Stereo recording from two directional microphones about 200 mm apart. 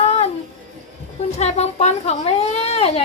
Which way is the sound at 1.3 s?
30° left (ahead or behind).